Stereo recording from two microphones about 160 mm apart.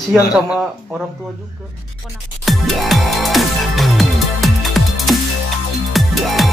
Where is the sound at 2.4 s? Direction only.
Centre (ahead or behind).